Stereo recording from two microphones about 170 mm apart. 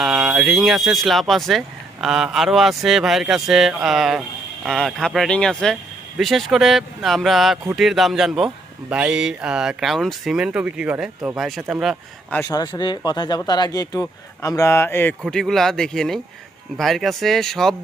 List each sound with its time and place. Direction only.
0.0 s speech: centre (ahead or behind)
12.3 s speech: 20° left (ahead or behind)
15.2 s speech: centre (ahead or behind)